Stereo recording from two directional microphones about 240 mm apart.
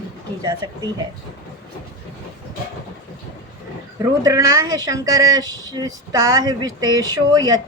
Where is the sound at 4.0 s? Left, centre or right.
Centre.